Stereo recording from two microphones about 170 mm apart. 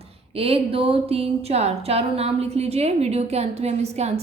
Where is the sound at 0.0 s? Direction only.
35° right (ahead or behind).